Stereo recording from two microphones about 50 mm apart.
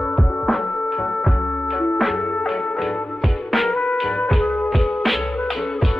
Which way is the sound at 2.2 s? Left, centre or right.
Left.